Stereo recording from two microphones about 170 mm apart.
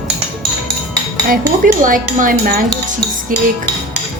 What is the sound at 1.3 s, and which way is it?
Cutlery, 55° right (ahead or behind).